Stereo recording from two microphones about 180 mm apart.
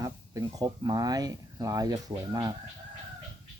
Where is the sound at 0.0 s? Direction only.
20° right (ahead or behind).